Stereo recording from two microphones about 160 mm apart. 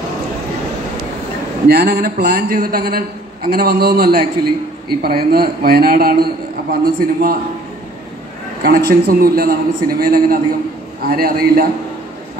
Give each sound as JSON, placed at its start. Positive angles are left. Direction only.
{"t": 1.7, "sound": "a man's voice", "side_deg": -85}
{"t": 2.1, "sound": "a man's voice", "side_deg": -65}
{"t": 3.4, "sound": "a man's voice", "side_deg": -80}
{"t": 8.6, "sound": "a man's voice", "side_deg": -65}